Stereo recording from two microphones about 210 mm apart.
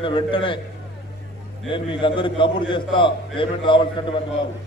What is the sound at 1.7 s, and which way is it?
A man's voice, 25° left (ahead or behind).